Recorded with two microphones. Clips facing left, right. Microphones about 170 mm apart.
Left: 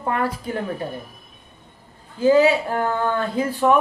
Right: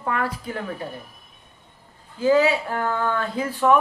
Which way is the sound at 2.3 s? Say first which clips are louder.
Left 3 dB; 25° left (ahead or behind).